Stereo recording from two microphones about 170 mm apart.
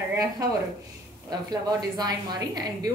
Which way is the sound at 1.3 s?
25° right (ahead or behind).